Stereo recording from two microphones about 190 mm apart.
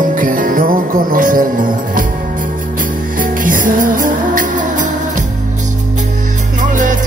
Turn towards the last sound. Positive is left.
turn(degrees=-40)  # may be behind; listen again after turning